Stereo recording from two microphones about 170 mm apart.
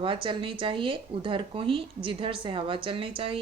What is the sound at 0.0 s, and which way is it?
A woman's voice, 30° right (ahead or behind).